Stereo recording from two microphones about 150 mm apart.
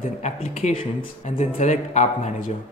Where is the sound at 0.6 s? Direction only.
55° left (ahead or behind).